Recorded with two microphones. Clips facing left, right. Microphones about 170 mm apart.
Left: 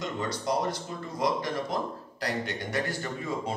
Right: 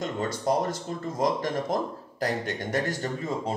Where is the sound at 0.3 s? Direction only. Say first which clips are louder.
Right 3 dB; 50° right (ahead or behind).